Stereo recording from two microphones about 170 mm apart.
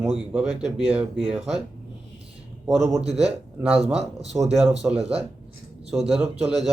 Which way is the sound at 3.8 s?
40° right (ahead or behind).